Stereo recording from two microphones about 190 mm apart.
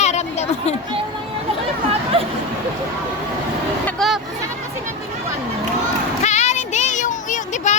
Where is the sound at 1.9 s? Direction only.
30° right (ahead or behind).